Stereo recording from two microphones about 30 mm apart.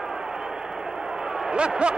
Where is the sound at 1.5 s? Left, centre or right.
Right.